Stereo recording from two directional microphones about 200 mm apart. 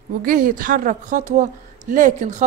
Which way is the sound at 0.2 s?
45° right (ahead or behind).